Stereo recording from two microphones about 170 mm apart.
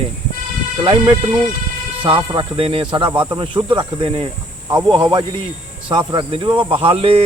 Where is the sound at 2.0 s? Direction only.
30° right (ahead or behind).